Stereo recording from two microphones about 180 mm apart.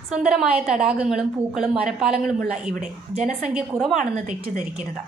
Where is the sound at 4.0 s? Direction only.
45° right (ahead or behind).